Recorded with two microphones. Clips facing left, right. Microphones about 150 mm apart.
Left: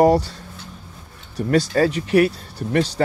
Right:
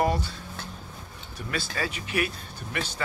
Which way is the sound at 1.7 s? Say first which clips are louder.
Left 14 dB; 45° left (ahead or behind).